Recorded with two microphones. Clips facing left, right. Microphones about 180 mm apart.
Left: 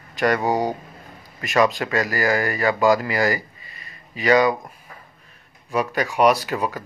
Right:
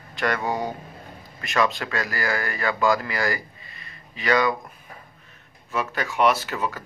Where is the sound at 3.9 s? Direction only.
15° left (ahead or behind).